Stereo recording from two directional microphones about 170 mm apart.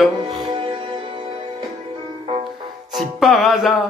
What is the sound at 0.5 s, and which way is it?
Music, 30° right (ahead or behind).